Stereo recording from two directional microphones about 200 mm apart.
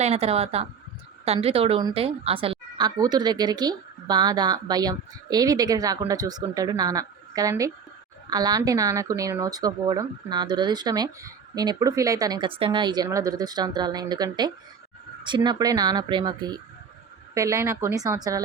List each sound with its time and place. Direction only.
0.0 s speech: 30° right (ahead or behind)